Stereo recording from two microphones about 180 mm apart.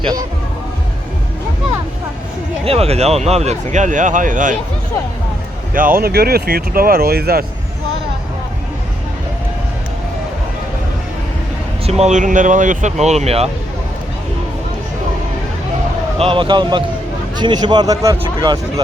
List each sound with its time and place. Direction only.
0.0 s speech: 20° right (ahead or behind)
2.6 s speech: 35° right (ahead or behind)
5.7 s speech: 50° right (ahead or behind)
11.9 s speech: 35° right (ahead or behind)
16.1 s speech: 30° right (ahead or behind)